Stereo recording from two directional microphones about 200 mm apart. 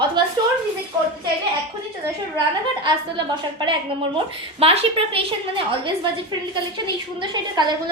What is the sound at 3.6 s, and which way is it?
A woman's voice, 25° right (ahead or behind).